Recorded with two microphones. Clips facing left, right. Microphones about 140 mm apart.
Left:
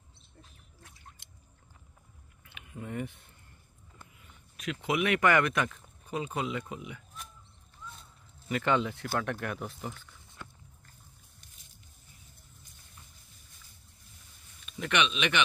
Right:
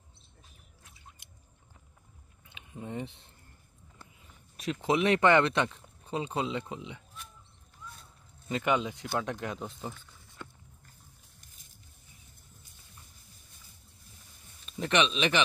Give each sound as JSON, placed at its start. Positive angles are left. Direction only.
{"t": 2.4, "sound": "a sound", "side_deg": -20}
{"t": 4.0, "sound": "speech", "side_deg": -35}
{"t": 8.5, "sound": "speech", "side_deg": -20}
{"t": 14.7, "sound": "speech", "side_deg": -35}